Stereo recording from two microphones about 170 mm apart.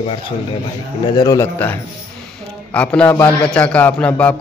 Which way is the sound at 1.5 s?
10° left (ahead or behind).